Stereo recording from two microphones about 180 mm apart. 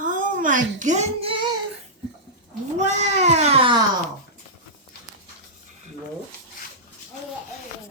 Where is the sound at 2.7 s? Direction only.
40° right (ahead or behind).